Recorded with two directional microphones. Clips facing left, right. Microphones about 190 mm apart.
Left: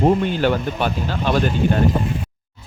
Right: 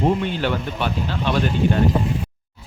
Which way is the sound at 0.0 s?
45° left (ahead or behind).